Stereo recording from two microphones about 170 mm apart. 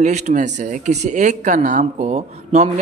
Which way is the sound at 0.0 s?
45° right (ahead or behind).